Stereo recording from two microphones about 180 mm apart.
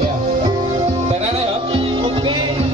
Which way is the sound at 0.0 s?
25° right (ahead or behind).